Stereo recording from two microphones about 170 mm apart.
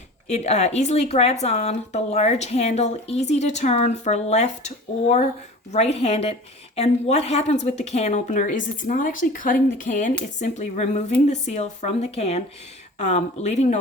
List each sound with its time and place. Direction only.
0.3 s a woman's voice: 40° left (ahead or behind)